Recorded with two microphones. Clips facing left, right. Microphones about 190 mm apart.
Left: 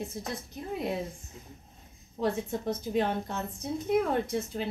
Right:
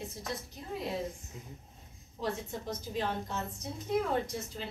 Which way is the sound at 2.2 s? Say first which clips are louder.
Left 6 dB; 60° left (ahead or behind).